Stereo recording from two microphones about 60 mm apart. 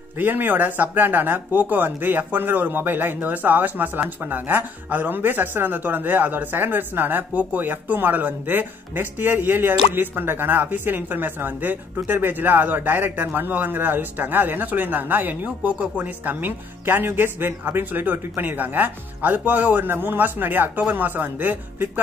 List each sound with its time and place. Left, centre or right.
0.2 s speech: right